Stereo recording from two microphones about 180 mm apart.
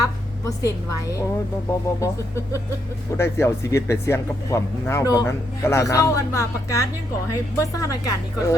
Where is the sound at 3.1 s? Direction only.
15° left (ahead or behind).